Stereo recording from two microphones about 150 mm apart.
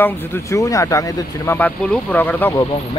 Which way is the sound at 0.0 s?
15° left (ahead or behind).